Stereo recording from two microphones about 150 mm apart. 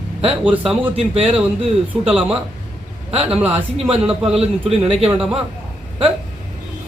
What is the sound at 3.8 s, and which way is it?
Speech, 5° right (ahead or behind).